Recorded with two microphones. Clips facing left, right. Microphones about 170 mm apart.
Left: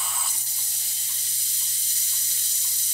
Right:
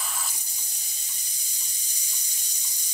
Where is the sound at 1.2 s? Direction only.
15° right (ahead or behind).